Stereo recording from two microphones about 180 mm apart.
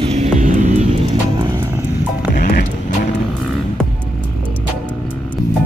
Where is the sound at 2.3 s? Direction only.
55° left (ahead or behind).